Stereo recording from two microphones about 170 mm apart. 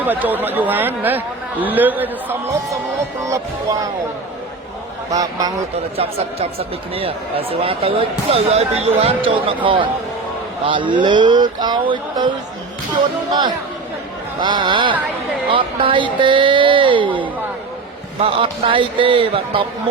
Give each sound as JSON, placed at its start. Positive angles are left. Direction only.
{"t": 0.0, "sound": "speech", "side_deg": -10}
{"t": 5.1, "sound": "speech", "side_deg": -20}
{"t": 6.0, "sound": "speech", "side_deg": -35}
{"t": 14.4, "sound": "speech", "side_deg": -30}